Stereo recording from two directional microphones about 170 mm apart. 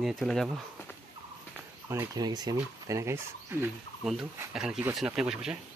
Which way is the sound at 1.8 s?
20° right (ahead or behind).